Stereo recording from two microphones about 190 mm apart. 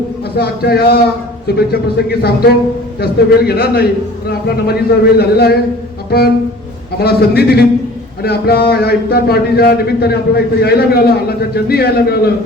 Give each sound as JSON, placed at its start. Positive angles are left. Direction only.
{"t": 0.3, "sound": "speech", "side_deg": 55}
{"t": 2.0, "sound": "speech", "side_deg": 55}
{"t": 6.1, "sound": "music", "side_deg": 55}
{"t": 7.0, "sound": "speech", "side_deg": 55}